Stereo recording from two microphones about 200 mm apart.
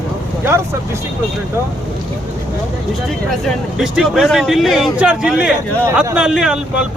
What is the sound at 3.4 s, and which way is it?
Speech, centre (ahead or behind).